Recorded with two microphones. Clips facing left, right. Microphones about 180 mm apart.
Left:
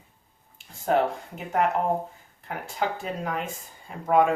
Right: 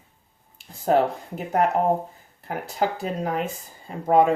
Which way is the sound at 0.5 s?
35° right (ahead or behind).